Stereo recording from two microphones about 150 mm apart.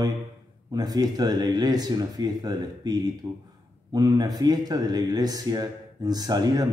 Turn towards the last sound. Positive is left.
turn(degrees=-25)  # may be behind; listen again after turning